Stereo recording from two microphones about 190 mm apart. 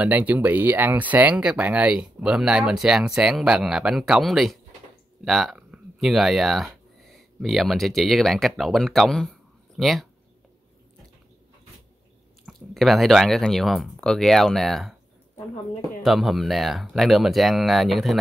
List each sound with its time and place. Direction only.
0.0 s speech: 10° right (ahead or behind)
12.4 s speech: centre (ahead or behind)
16.0 s speech: centre (ahead or behind)